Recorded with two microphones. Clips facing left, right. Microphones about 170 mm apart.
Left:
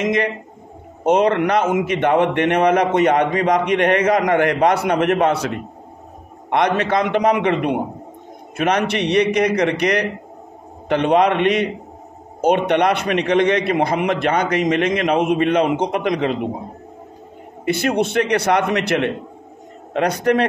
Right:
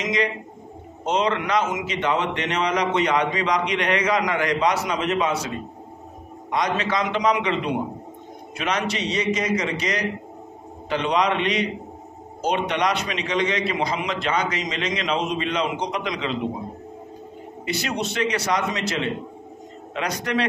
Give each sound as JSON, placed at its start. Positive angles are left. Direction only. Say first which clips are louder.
{"t": 0.0, "sound": "a man's voice", "louder": "left 5 dB", "side_deg": 55}
{"t": 17.6, "sound": "a man's voice", "louder": "left 8 dB", "side_deg": 55}